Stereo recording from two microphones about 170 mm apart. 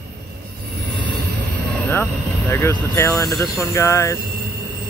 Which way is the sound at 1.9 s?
15° left (ahead or behind).